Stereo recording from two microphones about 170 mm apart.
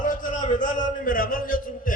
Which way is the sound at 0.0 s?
50° left (ahead or behind).